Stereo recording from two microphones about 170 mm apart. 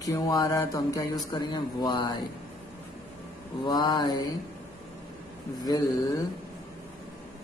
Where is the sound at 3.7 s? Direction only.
25° left (ahead or behind).